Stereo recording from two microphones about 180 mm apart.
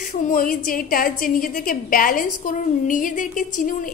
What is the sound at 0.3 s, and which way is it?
A woman's voice, 50° left (ahead or behind).